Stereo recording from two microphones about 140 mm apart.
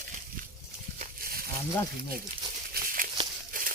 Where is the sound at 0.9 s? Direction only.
90° right.